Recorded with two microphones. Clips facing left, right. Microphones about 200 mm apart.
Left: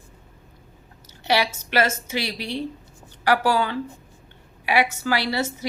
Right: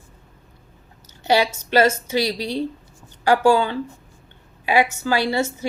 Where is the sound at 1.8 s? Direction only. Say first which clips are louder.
Right 6 dB; 35° right (ahead or behind).